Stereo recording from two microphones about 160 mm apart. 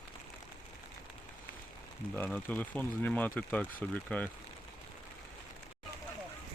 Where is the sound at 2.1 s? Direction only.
10° left (ahead or behind).